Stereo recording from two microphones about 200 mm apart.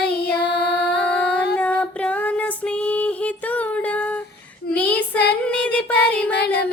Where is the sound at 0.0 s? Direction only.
55° left (ahead or behind).